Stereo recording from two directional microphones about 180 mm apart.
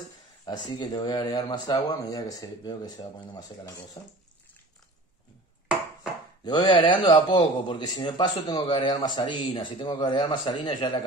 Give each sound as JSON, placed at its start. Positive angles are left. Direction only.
{"t": 0.5, "sound": "a man's voice", "side_deg": 25}
{"t": 6.4, "sound": "a man's voice", "side_deg": 25}